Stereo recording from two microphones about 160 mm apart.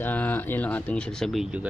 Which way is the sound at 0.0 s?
10° left (ahead or behind).